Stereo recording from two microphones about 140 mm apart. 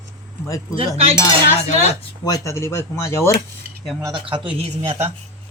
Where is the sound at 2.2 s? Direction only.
25° left (ahead or behind).